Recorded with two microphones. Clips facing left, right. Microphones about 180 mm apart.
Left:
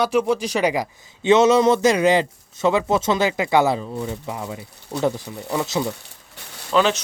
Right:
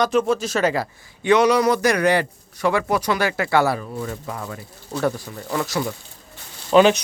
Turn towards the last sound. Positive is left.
turn(degrees=-15)  # may be behind; listen again after turning